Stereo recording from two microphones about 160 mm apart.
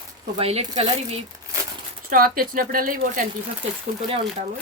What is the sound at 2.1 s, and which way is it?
Speech, 60° right (ahead or behind).